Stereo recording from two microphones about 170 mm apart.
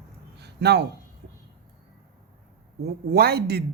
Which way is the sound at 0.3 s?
75° right (ahead or behind).